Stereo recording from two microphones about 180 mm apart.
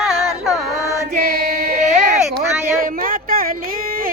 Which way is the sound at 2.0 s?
50° right (ahead or behind).